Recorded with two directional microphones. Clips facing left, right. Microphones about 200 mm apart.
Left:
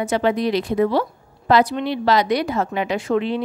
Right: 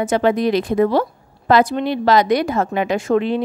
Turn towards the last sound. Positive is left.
turn(degrees=-45)  # may be behind; listen again after turning